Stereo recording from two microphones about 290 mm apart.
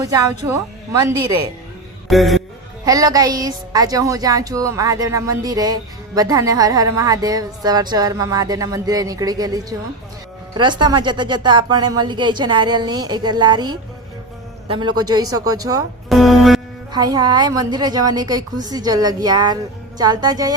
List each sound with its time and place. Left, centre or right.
0.0 s a woman's voice: centre
2.0 s music: centre
2.8 s a woman's voice: centre
16.0 s music: centre
16.9 s a woman's voice: centre